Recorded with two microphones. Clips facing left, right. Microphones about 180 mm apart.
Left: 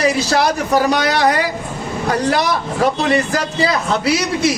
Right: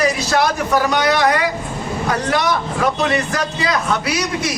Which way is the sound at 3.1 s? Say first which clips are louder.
Left 3 dB; 30° left (ahead or behind).